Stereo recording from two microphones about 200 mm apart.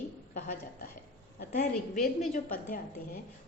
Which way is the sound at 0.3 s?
45° left (ahead or behind).